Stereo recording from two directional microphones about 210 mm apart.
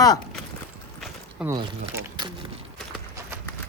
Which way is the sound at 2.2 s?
20° right (ahead or behind).